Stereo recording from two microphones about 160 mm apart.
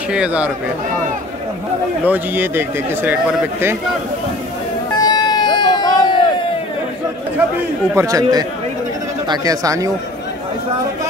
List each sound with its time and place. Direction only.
0.1 s speech: 10° right (ahead or behind)
2.0 s speech: 10° right (ahead or behind)
5.0 s a sound: 25° left (ahead or behind)
7.9 s speech: 20° right (ahead or behind)